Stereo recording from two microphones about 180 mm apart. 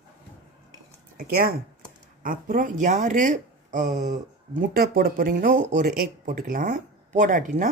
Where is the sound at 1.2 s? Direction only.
55° right (ahead or behind); by 4.6 s 40° right (ahead or behind).